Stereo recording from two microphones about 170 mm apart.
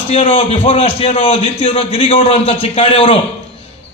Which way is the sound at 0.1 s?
30° left (ahead or behind).